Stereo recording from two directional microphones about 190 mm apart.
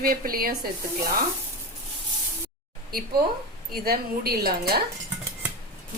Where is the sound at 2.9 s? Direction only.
50° right (ahead or behind).